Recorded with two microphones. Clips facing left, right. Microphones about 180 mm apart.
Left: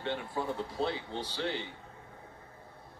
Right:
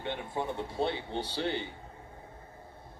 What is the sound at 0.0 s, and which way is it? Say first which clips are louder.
Speech: even; 20° right (ahead or behind).